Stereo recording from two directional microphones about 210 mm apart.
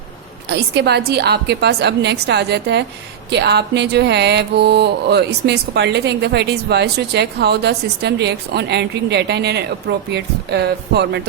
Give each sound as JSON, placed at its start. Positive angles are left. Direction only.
{"t": 0.4, "sound": "music", "side_deg": -50}